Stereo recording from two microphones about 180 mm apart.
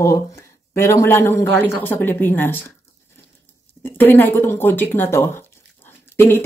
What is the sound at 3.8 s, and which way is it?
Speech, 10° left (ahead or behind).